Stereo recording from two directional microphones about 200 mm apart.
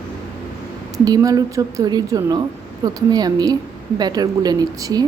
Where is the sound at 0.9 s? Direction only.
15° right (ahead or behind).